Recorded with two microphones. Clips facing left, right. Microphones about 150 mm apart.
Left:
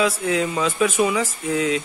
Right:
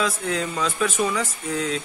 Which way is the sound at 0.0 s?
5° left (ahead or behind).